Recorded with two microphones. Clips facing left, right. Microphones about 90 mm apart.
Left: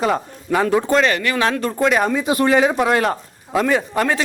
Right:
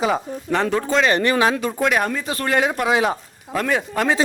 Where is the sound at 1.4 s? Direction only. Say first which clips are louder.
Right 1 dB; 15° right (ahead or behind).